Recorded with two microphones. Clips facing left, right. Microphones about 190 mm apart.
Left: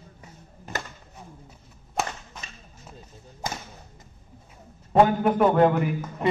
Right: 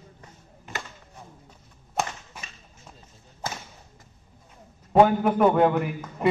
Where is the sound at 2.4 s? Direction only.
10° right (ahead or behind).